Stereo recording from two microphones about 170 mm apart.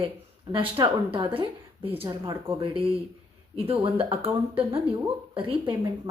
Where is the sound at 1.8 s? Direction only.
10° right (ahead or behind).